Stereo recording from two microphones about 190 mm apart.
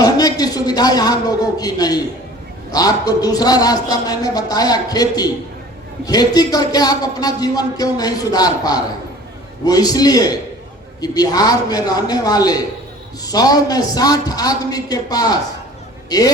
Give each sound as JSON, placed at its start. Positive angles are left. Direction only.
{"t": 0.0, "sound": "a man's voice", "side_deg": 20}